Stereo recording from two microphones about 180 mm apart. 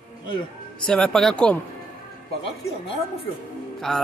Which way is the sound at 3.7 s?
Centre (ahead or behind).